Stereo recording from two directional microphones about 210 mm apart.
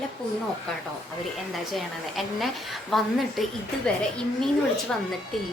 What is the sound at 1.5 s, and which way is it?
A woman's voice, centre (ahead or behind).